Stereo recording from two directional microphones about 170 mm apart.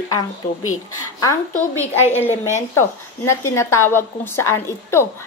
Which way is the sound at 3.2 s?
15° left (ahead or behind).